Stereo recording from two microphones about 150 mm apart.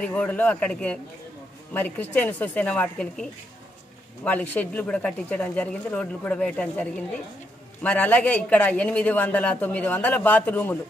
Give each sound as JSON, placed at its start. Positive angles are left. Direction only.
{"t": 0.0, "sound": "a man's voice", "side_deg": 10}